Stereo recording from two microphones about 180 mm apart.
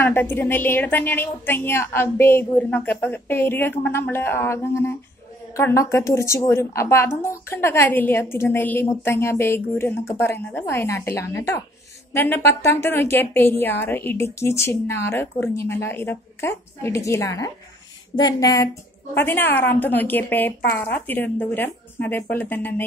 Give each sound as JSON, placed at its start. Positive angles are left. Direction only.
{"t": 0.1, "sound": "a woman's voice", "side_deg": 10}